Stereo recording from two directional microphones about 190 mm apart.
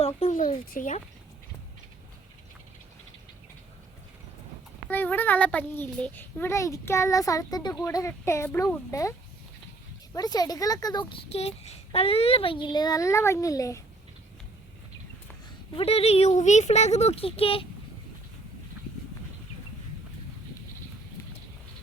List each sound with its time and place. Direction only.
0.0 s a sound: 40° left (ahead or behind)
4.9 s a child's voice: 10° left (ahead or behind)
10.2 s a child's voice: 20° left (ahead or behind)
11.1 s a child's voice: 30° left (ahead or behind); by 13.8 s 15° left (ahead or behind)
15.7 s speech: 30° left (ahead or behind)